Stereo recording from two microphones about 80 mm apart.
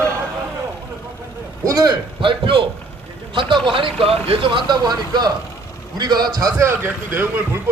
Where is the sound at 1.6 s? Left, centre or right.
Right.